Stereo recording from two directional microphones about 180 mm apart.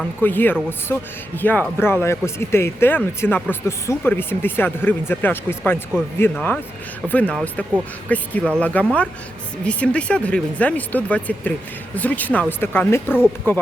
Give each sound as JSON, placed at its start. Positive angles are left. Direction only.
{"t": 0.2, "sound": "speech", "side_deg": 10}
{"t": 13.1, "sound": "speech", "side_deg": -5}